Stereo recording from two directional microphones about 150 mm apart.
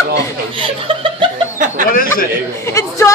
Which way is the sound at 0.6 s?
35° right (ahead or behind).